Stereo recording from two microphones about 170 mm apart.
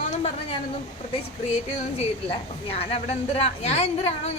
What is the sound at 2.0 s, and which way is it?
A woman's voice, 35° left (ahead or behind).